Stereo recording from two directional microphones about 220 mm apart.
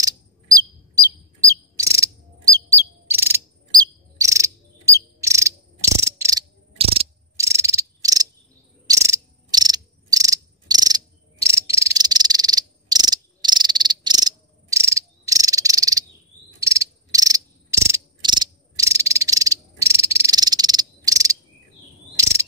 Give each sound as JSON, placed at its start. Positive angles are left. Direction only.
{"t": 0.0, "sound": "chirp", "side_deg": -15}
{"t": 6.8, "sound": "cricket", "side_deg": -25}
{"t": 7.3, "sound": "cricket", "side_deg": -15}